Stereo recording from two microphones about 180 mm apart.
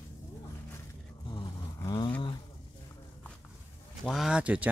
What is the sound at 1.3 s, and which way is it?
Vehicle, 20° left (ahead or behind).